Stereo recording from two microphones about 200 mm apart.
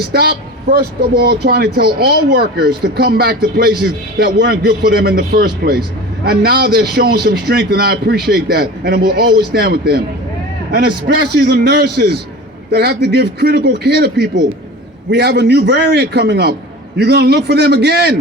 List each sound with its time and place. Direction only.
0.0 s a man's voice: 50° right (ahead or behind)